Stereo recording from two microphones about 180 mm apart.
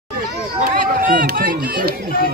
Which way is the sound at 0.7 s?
50° right (ahead or behind).